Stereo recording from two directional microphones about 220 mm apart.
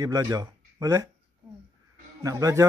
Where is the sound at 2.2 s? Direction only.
15° right (ahead or behind).